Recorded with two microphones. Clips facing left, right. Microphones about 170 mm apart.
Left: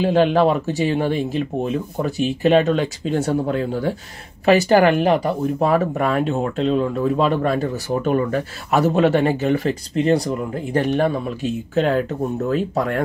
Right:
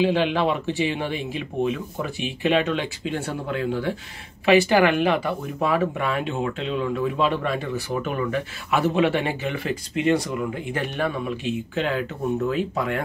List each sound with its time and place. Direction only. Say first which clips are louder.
0.0 s speech: left 5 dB; 45° left (ahead or behind)